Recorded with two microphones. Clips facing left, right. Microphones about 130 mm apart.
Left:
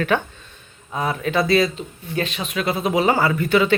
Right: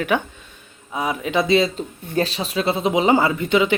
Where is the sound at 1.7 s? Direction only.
40° right (ahead or behind); by 3.7 s 20° right (ahead or behind).